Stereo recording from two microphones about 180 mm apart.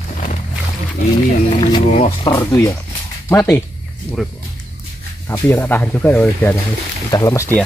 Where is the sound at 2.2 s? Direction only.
15° left (ahead or behind).